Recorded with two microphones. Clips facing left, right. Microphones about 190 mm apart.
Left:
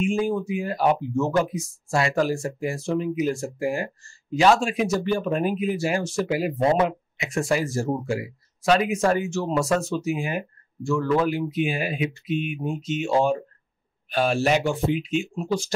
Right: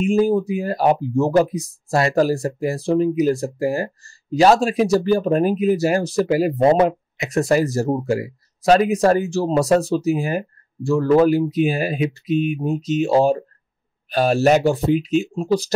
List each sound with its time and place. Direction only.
0.0 s speech: 40° right (ahead or behind)